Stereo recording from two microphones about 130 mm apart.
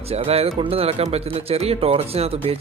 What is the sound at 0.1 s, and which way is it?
Speech, 50° right (ahead or behind).